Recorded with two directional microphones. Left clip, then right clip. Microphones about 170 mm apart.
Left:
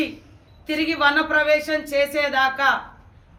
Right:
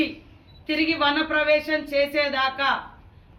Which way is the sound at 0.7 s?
20° left (ahead or behind).